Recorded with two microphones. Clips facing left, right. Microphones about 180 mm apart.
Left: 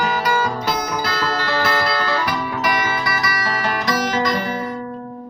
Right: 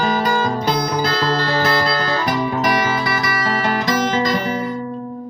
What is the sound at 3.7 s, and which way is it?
Guitar, 30° right (ahead or behind).